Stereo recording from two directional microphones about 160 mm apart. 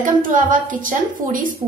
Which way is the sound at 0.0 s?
55° right (ahead or behind).